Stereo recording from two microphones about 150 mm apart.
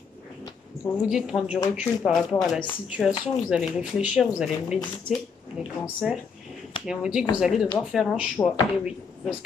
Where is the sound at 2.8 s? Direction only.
5° right (ahead or behind).